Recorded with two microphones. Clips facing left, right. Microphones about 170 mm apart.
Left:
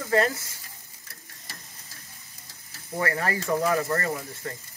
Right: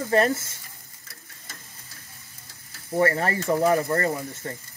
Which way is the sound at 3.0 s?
30° right (ahead or behind).